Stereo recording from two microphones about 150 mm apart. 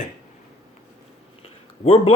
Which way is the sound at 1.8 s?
45° left (ahead or behind).